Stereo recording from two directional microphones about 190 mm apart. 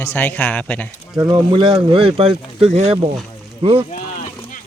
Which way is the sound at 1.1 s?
20° right (ahead or behind).